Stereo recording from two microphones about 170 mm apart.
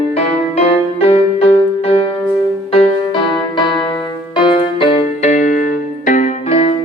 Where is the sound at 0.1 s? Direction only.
35° left (ahead or behind).